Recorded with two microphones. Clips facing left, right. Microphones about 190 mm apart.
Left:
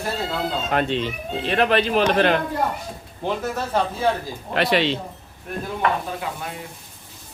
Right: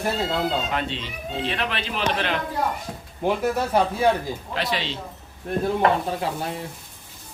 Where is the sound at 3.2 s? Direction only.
10° right (ahead or behind).